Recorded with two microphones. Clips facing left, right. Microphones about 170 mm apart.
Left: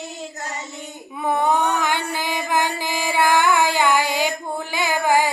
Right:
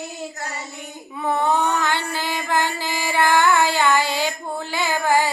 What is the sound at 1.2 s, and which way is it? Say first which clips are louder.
Mantra: left 1 dB; 15° left (ahead or behind).